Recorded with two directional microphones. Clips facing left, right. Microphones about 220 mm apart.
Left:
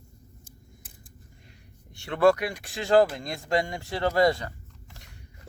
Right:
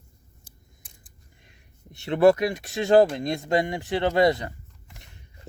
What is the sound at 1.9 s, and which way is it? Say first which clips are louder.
Speech: right 3 dB; 20° right (ahead or behind).